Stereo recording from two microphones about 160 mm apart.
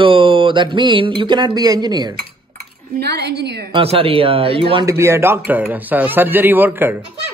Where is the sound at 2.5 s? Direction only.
85° right.